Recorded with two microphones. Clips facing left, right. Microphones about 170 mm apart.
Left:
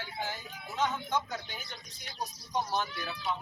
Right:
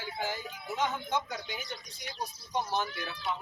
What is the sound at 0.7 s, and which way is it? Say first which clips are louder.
Speech: even; 10° right (ahead or behind).